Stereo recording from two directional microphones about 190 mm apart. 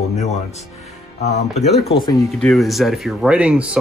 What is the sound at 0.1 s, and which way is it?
Music, 35° left (ahead or behind).